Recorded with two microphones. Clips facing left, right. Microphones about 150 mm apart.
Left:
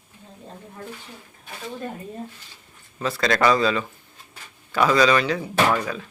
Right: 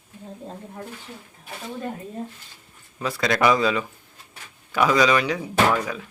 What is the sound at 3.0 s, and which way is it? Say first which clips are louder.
Speech: even; 15° right (ahead or behind).